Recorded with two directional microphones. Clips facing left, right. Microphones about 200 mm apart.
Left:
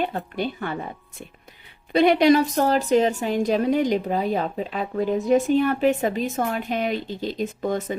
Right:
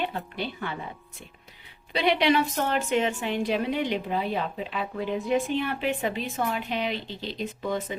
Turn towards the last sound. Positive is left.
turn(degrees=45)  # may be behind; listen again after turning